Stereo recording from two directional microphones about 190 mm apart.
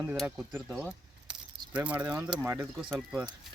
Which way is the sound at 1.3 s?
5° right (ahead or behind).